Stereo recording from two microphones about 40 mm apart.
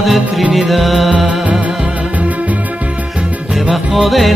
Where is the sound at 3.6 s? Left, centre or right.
Centre.